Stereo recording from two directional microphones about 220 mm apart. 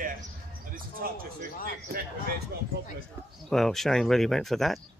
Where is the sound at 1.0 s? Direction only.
40° right (ahead or behind).